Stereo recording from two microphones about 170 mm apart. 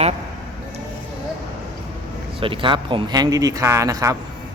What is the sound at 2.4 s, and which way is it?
A man's voice, 30° right (ahead or behind).